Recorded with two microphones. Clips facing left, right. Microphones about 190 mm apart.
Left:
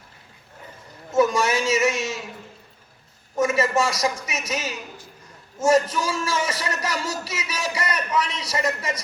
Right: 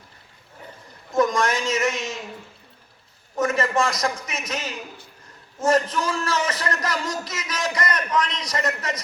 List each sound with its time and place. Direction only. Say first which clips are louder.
1.1 s a man's voice: left 1 dB; 10° left (ahead or behind)
3.3 s a man's voice: left 1 dB; 10° left (ahead or behind)